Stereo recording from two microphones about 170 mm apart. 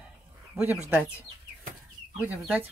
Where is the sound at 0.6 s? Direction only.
20° left (ahead or behind).